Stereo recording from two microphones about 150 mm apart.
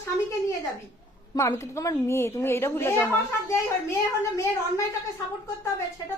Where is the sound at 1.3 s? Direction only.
20° left (ahead or behind).